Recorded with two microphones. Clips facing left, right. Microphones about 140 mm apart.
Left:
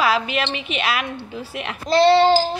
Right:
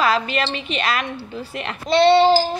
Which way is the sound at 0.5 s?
5° left (ahead or behind).